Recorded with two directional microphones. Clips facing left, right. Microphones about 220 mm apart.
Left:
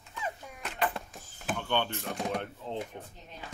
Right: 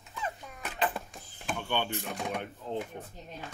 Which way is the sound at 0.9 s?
Centre (ahead or behind).